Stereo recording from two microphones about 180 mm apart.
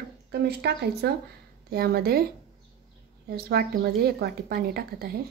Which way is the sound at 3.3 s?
60° right (ahead or behind).